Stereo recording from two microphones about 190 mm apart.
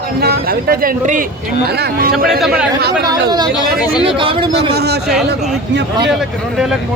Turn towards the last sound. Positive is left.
turn(degrees=-60)  # may be behind; listen again after turning